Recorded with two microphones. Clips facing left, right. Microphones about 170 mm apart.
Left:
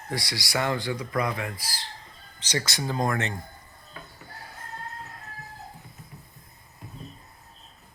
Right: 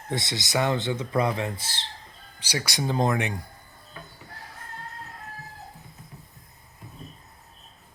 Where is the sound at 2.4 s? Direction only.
10° right (ahead or behind).